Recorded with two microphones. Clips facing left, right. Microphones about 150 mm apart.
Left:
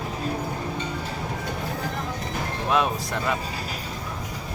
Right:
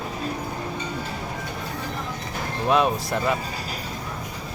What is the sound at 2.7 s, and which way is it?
Speech, centre (ahead or behind).